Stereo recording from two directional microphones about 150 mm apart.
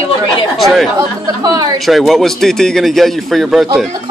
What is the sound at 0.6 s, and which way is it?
Speech, centre (ahead or behind).